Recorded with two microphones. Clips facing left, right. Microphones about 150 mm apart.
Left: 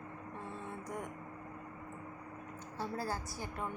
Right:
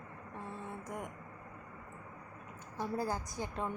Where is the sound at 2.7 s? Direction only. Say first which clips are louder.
Right 3 dB; 15° right (ahead or behind).